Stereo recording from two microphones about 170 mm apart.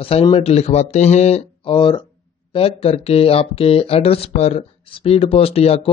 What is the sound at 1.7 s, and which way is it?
A man's voice, 25° left (ahead or behind).